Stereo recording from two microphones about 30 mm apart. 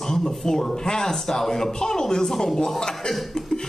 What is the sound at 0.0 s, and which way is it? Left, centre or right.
Speech, centre.